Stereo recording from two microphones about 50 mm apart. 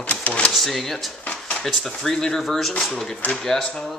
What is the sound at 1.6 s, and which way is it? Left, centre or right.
Speech, centre.